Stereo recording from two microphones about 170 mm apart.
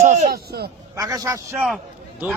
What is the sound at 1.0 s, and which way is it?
Speech, 20° right (ahead or behind).